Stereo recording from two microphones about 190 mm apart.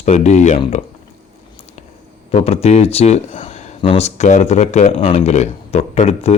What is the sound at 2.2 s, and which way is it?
Speech, 30° left (ahead or behind).